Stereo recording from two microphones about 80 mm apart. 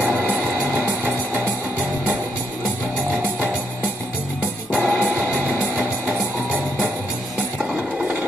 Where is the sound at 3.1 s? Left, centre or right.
Right.